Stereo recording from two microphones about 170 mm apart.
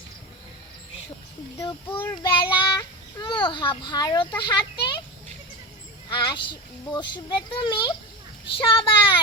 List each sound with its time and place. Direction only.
1.5 s a child's voice: 25° left (ahead or behind)
6.1 s speech: 30° left (ahead or behind)